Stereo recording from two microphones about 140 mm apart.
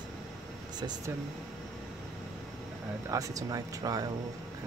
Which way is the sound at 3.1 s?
25° right (ahead or behind).